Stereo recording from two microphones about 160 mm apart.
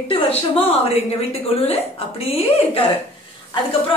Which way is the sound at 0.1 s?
35° left (ahead or behind).